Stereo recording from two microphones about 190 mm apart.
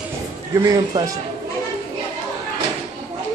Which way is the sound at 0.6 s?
20° right (ahead or behind).